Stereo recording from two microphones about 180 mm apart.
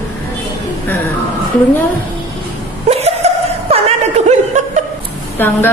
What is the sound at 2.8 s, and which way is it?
Chuckle, 35° right (ahead or behind).